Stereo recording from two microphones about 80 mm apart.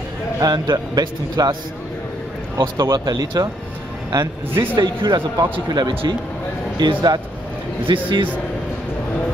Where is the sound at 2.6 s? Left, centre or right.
Right.